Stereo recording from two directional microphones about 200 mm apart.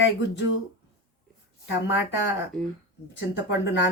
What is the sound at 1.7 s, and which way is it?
Speech, 60° left (ahead or behind).